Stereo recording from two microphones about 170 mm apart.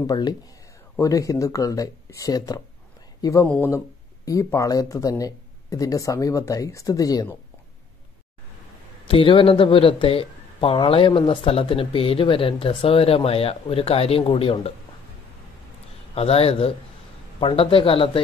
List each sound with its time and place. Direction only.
0.0 s speech: 25° left (ahead or behind)
9.0 s speech: 30° left (ahead or behind)
16.2 s speech: 35° left (ahead or behind)